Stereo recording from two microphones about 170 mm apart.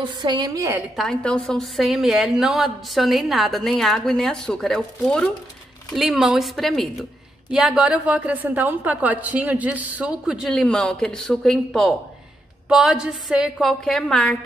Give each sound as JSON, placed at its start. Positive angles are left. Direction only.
{"t": 0.0, "sound": "a woman's voice", "side_deg": -25}
{"t": 0.9, "sound": "a woman's voice", "side_deg": 5}